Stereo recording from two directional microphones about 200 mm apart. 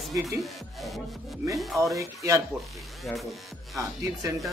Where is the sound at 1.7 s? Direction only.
15° right (ahead or behind).